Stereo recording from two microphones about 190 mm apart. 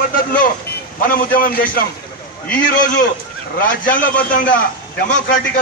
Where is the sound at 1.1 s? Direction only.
45° left (ahead or behind).